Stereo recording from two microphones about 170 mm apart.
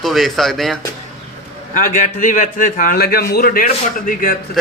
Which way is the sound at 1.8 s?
50° left (ahead or behind).